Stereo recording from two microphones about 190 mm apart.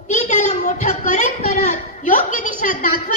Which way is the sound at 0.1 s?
35° left (ahead or behind).